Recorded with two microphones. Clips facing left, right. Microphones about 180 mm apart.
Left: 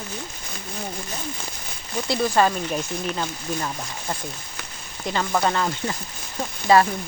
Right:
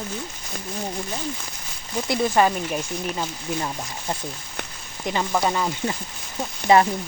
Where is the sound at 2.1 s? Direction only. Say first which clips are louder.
Even; 15° right (ahead or behind).